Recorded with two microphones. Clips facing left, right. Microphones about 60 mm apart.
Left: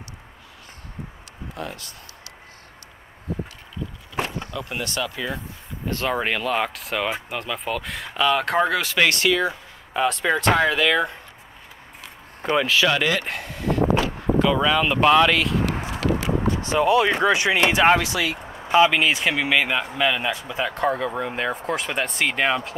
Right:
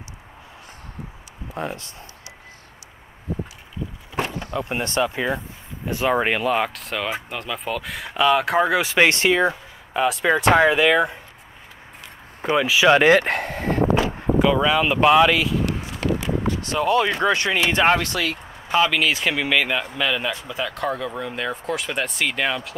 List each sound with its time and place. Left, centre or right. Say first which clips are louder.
1.5 s speech: right 4 dB; right
4.5 s speech: right 4 dB; right
5.9 s speech: right 3 dB; centre
9.9 s speech: right 2 dB; centre
10.4 s speech: right 4 dB; centre
12.5 s speech: right 1 dB; centre
13.0 s a sound: right 8 dB; right
13.9 s speech: right 1 dB; centre
16.7 s speech: left 2 dB; centre
19.2 s speech: even; centre; by 22.8 s left